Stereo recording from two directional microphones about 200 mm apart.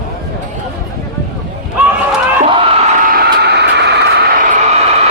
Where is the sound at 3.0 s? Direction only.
45° right (ahead or behind).